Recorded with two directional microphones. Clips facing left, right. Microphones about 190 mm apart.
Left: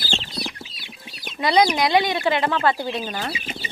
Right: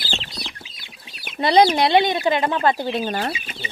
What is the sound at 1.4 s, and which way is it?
Speech, 35° right (ahead or behind).